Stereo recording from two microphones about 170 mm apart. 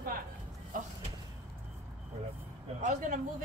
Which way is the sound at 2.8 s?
50° right (ahead or behind).